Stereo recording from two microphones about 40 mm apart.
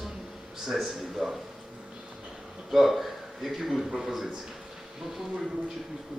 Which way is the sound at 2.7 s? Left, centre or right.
Centre.